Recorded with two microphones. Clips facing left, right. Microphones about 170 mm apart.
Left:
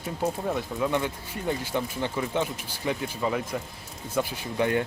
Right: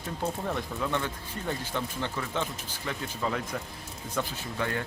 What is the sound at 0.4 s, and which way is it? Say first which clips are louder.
Speech: left 4 dB; 15° left (ahead or behind).